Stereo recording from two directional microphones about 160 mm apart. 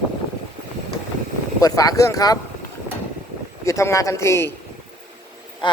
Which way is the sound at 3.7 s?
20° left (ahead or behind).